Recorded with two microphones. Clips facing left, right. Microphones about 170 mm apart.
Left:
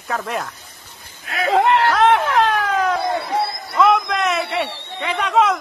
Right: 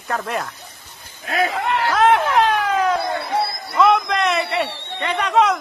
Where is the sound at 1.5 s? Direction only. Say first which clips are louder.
Left 6 dB; 90° left.